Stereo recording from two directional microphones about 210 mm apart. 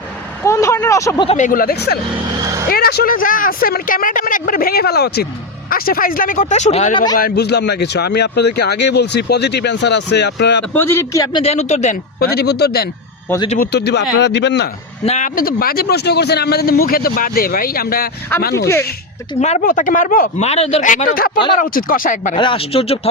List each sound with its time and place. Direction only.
0.4 s a sound: 15° left (ahead or behind)
1.3 s speech: 35° left (ahead or behind)
2.4 s vehicle: 15° right (ahead or behind)
2.6 s a man's voice: 45° left (ahead or behind); by 7.0 s 30° left (ahead or behind)
7.2 s speech: 50° left (ahead or behind)
10.8 s a man's voice: 10° left (ahead or behind); by 14.7 s 55° left (ahead or behind)
15.0 s speech: 35° left (ahead or behind)
19.4 s a man's voice: 35° left (ahead or behind)
22.4 s speech: 25° left (ahead or behind)